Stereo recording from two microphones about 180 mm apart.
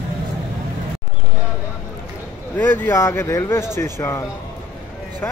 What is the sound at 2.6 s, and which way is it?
Speech, 10° left (ahead or behind).